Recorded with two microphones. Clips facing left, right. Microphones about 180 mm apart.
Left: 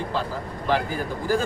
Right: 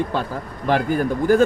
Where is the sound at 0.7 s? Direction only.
55° right (ahead or behind).